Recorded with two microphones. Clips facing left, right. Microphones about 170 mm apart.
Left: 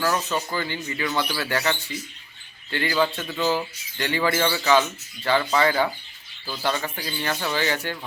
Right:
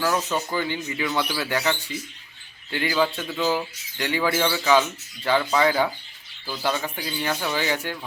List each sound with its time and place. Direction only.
0.0 s a man's voice: 5° right (ahead or behind)